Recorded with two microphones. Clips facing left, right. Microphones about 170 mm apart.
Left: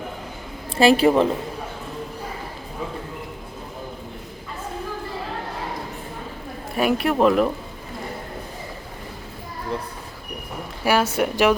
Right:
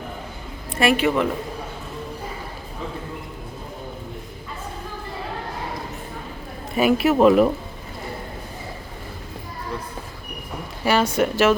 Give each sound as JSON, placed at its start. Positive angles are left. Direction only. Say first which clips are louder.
{"t": 0.7, "sound": "speech", "louder": "left 4 dB", "side_deg": 30}
{"t": 6.7, "sound": "speech", "louder": "right 3 dB", "side_deg": 0}
{"t": 10.8, "sound": "speech", "louder": "right 1 dB", "side_deg": 10}